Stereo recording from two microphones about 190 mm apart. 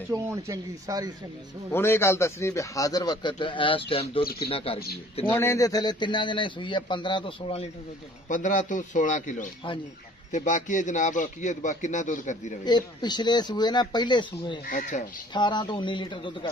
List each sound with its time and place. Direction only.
0.1 s speech: 20° right (ahead or behind)
1.7 s a man's voice: 15° left (ahead or behind); by 4.7 s 30° left (ahead or behind)
5.3 s a man's voice: 15° left (ahead or behind); by 7.7 s 30° left (ahead or behind)
8.3 s a man's voice: 40° left (ahead or behind)
12.6 s a man's voice: 20° left (ahead or behind)
14.7 s a man's voice: 40° left (ahead or behind)
15.3 s a man's voice: 25° left (ahead or behind)